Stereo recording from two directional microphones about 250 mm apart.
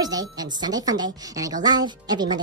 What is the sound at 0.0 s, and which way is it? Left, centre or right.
A woman's voice, centre.